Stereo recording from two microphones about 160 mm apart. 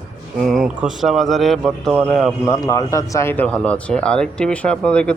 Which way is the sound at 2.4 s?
20° left (ahead or behind).